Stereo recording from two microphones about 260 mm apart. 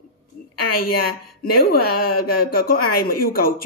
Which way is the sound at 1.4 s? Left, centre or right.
Left.